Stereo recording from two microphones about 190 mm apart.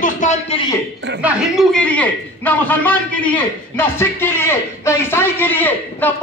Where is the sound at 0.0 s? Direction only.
40° left (ahead or behind).